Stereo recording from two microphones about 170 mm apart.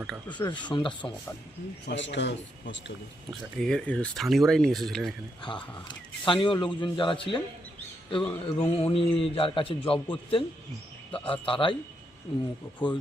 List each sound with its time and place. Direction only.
0.3 s a man's voice: 25° left (ahead or behind)
1.9 s a man's voice: 90° left
3.6 s speech: 5° left (ahead or behind)
5.4 s a man's voice: 30° left (ahead or behind)